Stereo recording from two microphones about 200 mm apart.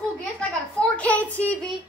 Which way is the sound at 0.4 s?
5° left (ahead or behind).